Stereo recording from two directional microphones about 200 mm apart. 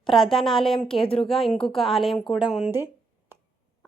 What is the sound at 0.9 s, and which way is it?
Speech, 25° left (ahead or behind).